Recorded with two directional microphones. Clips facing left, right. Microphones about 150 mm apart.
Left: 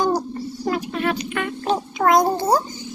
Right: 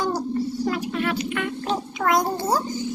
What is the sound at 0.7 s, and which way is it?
Vehicle, 30° left (ahead or behind).